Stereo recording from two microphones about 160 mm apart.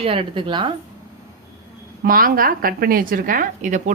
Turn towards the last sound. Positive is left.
turn(degrees=-50)  # may be behind; listen again after turning